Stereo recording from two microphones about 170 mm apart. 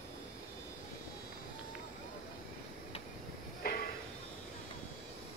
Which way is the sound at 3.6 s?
60° left (ahead or behind).